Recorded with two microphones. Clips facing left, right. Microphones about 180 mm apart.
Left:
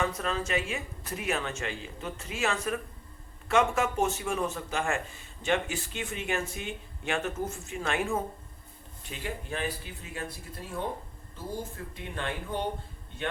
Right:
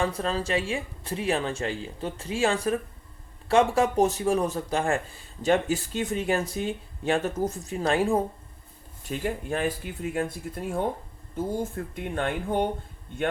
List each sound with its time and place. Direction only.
0.0 s speech: 30° right (ahead or behind)
9.0 s speech: 45° right (ahead or behind)
11.9 s speech: 50° right (ahead or behind)